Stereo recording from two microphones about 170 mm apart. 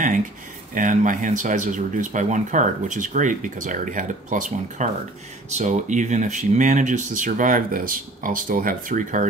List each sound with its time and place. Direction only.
0.7 s speech: 50° right (ahead or behind)